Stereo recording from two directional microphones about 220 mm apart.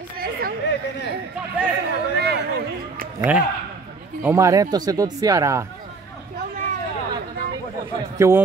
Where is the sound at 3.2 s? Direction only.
5° right (ahead or behind).